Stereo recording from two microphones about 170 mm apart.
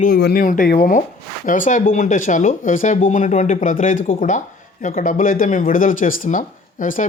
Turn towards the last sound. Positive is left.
turn(degrees=50)  # may be behind; listen again after turning